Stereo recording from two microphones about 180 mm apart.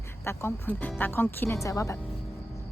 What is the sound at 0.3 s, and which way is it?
A woman's voice, 10° left (ahead or behind).